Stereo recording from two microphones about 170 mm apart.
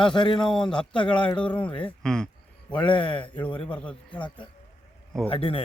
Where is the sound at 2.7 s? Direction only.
30° left (ahead or behind).